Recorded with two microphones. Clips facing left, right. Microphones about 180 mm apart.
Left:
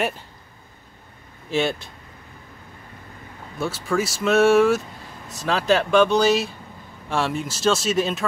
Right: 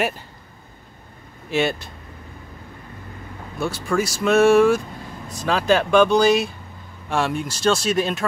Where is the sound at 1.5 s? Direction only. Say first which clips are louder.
Right 1 dB; centre (ahead or behind).